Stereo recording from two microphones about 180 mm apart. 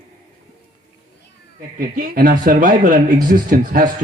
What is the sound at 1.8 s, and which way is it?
Speech, 50° right (ahead or behind).